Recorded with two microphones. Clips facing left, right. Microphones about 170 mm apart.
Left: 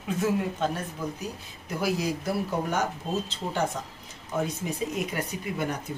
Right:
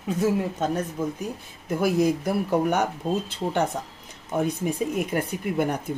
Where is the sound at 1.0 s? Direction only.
45° right (ahead or behind).